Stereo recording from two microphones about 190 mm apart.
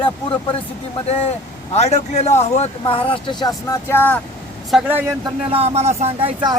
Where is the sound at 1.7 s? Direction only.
35° left (ahead or behind); by 4.2 s 10° left (ahead or behind).